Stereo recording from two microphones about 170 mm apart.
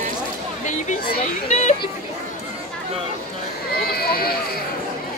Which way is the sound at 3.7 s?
65° left (ahead or behind).